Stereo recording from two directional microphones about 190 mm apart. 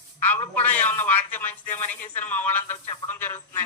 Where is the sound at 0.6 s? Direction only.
10° left (ahead or behind).